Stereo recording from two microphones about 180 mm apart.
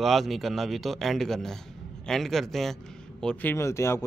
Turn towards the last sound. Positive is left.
turn(degrees=15)  # may be behind; listen again after turning